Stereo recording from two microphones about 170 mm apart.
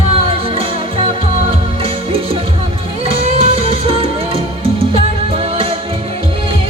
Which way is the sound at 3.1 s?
35° right (ahead or behind).